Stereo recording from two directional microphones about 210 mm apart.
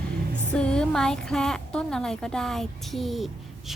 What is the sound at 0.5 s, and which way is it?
A woman's voice, 5° left (ahead or behind).